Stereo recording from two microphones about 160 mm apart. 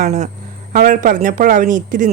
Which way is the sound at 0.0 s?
50° right (ahead or behind).